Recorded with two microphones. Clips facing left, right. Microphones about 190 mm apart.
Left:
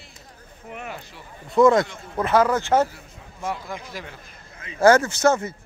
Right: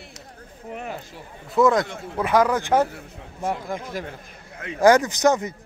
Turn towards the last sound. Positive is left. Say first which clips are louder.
# even
turn(degrees=-15)  # may be behind; listen again after turning